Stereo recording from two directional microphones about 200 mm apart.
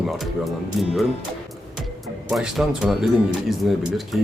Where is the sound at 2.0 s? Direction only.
Centre (ahead or behind).